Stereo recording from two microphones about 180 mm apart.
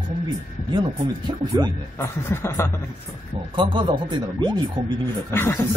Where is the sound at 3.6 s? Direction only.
25° right (ahead or behind).